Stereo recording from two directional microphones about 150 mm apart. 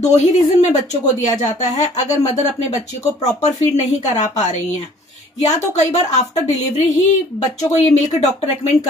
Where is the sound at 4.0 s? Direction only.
50° left (ahead or behind).